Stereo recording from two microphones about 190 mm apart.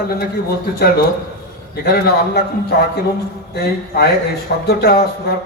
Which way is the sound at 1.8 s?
55° left (ahead or behind).